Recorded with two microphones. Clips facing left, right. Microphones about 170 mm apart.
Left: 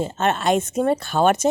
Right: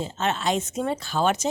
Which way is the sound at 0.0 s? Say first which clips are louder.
Left 5 dB; 55° left (ahead or behind).